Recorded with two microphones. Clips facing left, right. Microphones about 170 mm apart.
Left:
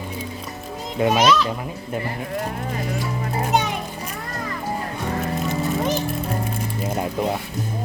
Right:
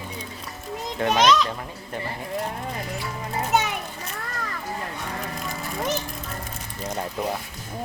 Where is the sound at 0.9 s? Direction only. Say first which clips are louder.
Left 2 dB; 15° left (ahead or behind).